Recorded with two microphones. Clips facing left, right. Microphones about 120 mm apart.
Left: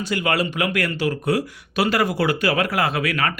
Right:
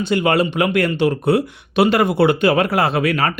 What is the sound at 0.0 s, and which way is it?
Speech, 25° right (ahead or behind).